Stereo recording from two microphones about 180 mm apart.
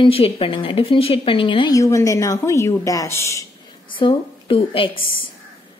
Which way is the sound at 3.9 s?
30° left (ahead or behind).